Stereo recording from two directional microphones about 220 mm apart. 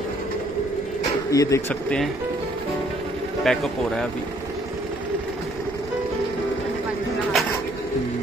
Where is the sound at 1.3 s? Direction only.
15° left (ahead or behind).